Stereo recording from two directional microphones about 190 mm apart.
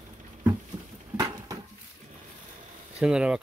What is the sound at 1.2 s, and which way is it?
Dishes, 20° right (ahead or behind).